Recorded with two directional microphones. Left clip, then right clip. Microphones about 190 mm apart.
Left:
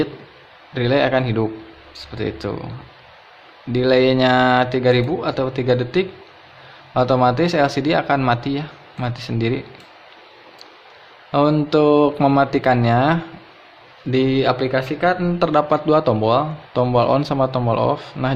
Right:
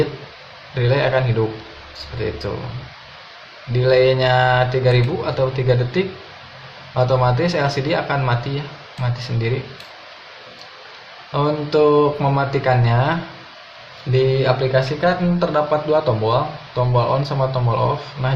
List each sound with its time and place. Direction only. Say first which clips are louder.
0.7 s speech: left 1 dB; 55° left (ahead or behind)
2.2 s speech: even; 55° left (ahead or behind)
3.8 s speech: even; 55° left (ahead or behind)
11.3 s speech: left 3 dB; 55° left (ahead or behind)